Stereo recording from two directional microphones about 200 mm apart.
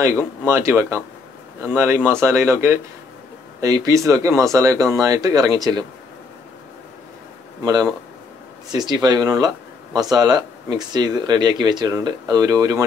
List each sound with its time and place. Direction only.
0.5 s speech: 15° right (ahead or behind)
7.6 s speech: 20° right (ahead or behind)